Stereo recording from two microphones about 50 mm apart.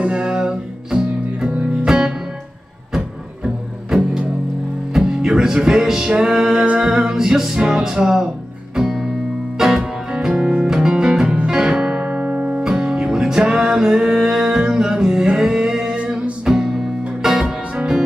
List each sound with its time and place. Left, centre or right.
0.0 s music: centre
1.5 s music: right
1.9 s music: centre
3.9 s music: centre
10.3 s music: right
12.6 s music: centre
16.0 s music: right
16.4 s music: centre